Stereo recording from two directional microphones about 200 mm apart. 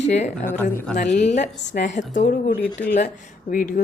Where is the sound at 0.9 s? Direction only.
40° left (ahead or behind).